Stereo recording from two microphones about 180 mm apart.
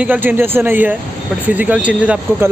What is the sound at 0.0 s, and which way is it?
Speech, 10° right (ahead or behind).